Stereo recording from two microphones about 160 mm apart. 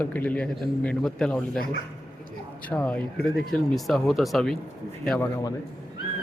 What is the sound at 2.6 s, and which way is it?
Speech, 5° left (ahead or behind).